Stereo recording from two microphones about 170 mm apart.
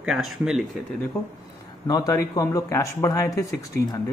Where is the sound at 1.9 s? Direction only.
20° left (ahead or behind).